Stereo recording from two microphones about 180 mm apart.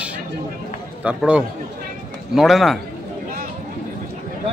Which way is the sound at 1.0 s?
5° right (ahead or behind).